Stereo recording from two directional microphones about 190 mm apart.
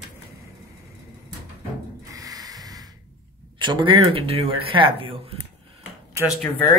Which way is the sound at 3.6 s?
25° right (ahead or behind).